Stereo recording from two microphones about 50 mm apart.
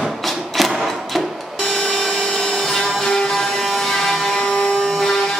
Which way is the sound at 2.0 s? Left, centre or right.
Centre.